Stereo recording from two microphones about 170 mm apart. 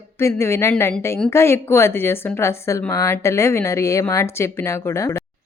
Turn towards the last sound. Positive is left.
turn(degrees=15)  # may be behind; listen again after turning